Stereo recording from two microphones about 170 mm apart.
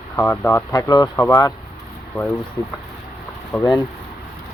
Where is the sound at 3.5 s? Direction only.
Centre (ahead or behind).